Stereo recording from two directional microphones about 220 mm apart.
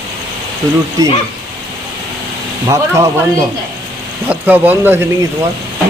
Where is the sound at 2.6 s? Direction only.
15° right (ahead or behind).